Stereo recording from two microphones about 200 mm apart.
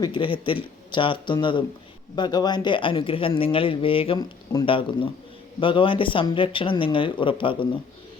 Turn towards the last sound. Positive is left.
turn(degrees=25)  # may be behind; listen again after turning